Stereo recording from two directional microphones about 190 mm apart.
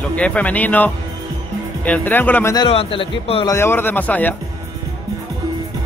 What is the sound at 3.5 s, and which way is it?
Speech, 15° left (ahead or behind).